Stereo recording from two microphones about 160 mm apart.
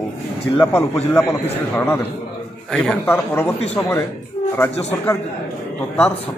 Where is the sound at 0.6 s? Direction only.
15° left (ahead or behind).